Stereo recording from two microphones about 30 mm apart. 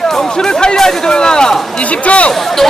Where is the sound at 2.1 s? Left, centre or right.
Left.